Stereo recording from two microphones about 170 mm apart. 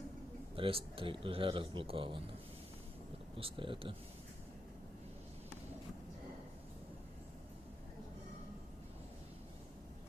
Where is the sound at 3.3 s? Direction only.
30° right (ahead or behind).